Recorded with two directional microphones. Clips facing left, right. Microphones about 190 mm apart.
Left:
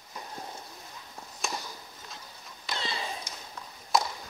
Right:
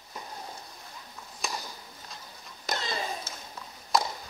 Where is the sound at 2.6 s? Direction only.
45° right (ahead or behind).